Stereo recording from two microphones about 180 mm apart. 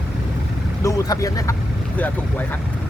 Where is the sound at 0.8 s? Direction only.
15° left (ahead or behind).